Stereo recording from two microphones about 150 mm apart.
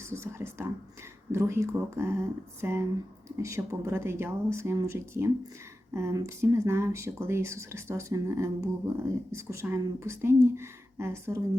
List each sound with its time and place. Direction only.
0.1 s speech: 15° right (ahead or behind)